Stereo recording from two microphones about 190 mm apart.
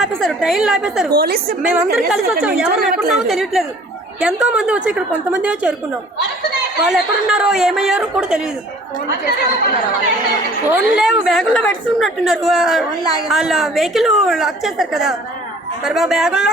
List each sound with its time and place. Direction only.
0.0 s a woman's voice: centre (ahead or behind)
1.1 s a woman's voice: 50° right (ahead or behind)
1.6 s a woman's voice: 5° right (ahead or behind)
6.8 s a woman's voice: 5° right (ahead or behind)
10.7 s a woman's voice: centre (ahead or behind)